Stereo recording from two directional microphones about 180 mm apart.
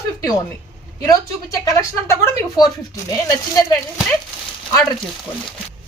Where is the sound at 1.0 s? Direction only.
20° left (ahead or behind).